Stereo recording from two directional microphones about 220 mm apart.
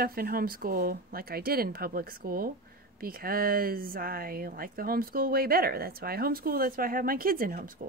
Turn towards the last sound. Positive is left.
turn(degrees=-40)  # may be behind; listen again after turning